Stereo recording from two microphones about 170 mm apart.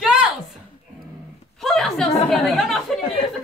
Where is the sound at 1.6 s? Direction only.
Centre (ahead or behind).